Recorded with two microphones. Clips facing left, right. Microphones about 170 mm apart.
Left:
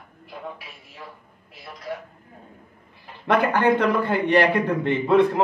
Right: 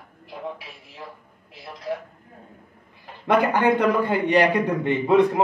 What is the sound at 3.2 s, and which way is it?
A man's voice, 15° right (ahead or behind).